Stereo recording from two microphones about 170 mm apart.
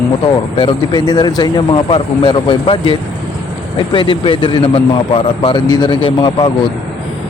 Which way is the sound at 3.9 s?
30° left (ahead or behind).